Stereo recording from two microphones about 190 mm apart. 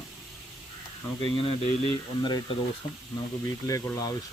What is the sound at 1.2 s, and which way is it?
Speech, 30° left (ahead or behind).